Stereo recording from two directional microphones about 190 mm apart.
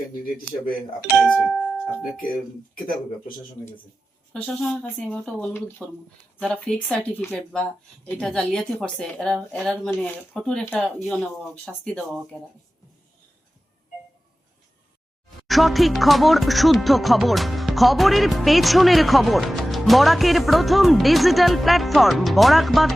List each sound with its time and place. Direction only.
1.2 s speech: centre (ahead or behind)
2.7 s speech: 50° left (ahead or behind)
4.3 s music: 5° left (ahead or behind)
15.4 s music: centre (ahead or behind)